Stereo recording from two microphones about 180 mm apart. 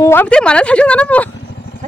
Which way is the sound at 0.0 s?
10° left (ahead or behind).